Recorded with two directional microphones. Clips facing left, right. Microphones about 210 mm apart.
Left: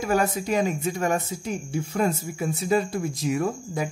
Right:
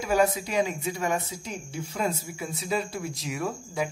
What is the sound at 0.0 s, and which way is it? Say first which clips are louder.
Speech: even; 50° left (ahead or behind).